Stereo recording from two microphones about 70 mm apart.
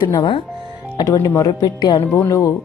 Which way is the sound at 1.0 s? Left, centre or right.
Left.